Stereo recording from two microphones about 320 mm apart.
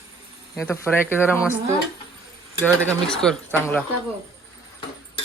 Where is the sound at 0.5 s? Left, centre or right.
Centre.